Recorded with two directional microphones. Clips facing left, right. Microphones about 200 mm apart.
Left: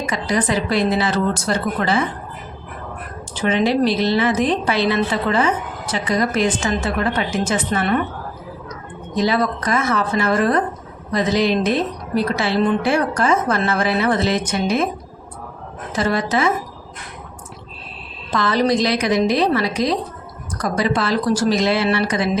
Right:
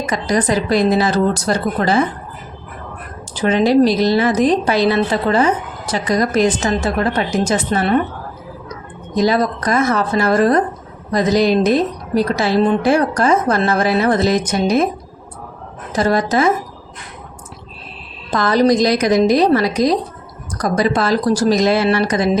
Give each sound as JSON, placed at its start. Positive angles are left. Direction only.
{"t": 0.0, "sound": "a woman's voice", "side_deg": -40}
{"t": 3.3, "sound": "a woman's voice", "side_deg": -40}
{"t": 15.9, "sound": "a woman's voice", "side_deg": -40}
{"t": 18.3, "sound": "a woman's voice", "side_deg": -40}